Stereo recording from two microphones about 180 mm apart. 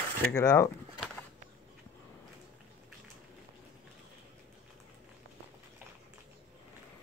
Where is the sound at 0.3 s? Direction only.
15° left (ahead or behind).